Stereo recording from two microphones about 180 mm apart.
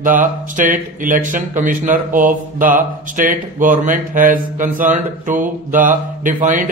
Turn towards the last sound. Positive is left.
turn(degrees=-45)  # may be behind; listen again after turning